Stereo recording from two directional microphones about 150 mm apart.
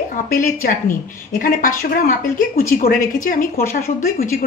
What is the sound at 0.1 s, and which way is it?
A woman's voice, 70° left (ahead or behind).